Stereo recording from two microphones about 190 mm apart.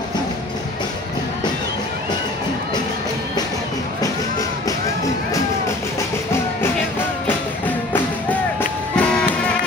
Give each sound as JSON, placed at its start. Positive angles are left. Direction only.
{"t": 4.0, "sound": "music", "side_deg": 20}
{"t": 7.2, "sound": "music", "side_deg": 10}